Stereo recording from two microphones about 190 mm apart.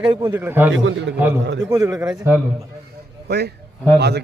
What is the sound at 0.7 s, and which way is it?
Speech, 90° right.